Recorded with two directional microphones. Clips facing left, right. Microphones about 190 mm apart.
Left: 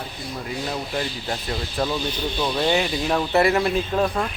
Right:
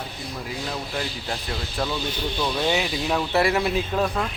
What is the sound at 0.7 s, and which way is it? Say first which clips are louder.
Speech: left 3 dB; 5° left (ahead or behind).